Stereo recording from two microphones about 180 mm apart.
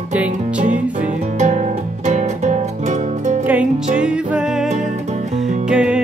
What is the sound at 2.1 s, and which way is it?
Music, 40° right (ahead or behind).